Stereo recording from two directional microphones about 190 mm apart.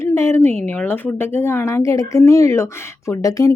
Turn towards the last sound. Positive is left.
turn(degrees=15)  # may be behind; listen again after turning